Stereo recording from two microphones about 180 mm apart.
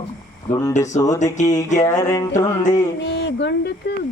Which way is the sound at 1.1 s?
40° left (ahead or behind).